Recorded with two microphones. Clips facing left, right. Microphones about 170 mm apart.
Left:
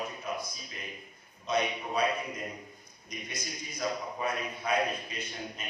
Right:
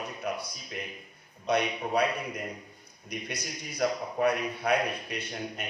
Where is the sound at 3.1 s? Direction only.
65° right (ahead or behind).